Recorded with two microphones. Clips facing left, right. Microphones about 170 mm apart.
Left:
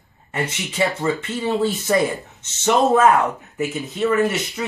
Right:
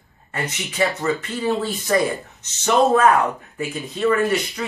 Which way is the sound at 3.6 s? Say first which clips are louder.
Left 1 dB; 20° left (ahead or behind).